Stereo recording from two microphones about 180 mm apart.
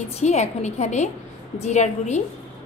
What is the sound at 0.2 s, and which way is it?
A woman's voice, 40° left (ahead or behind).